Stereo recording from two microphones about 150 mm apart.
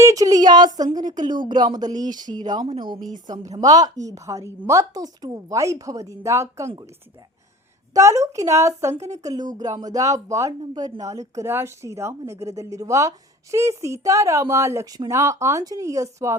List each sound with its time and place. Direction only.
0.0 s speech: 20° right (ahead or behind)
7.9 s speech: 20° right (ahead or behind)